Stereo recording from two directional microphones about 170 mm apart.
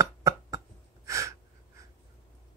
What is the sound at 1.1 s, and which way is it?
Gasp, 20° right (ahead or behind).